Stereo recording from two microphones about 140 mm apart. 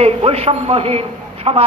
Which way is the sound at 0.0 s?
45° right (ahead or behind).